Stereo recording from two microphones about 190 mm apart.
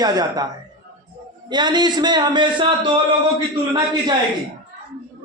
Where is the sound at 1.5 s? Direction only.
25° right (ahead or behind).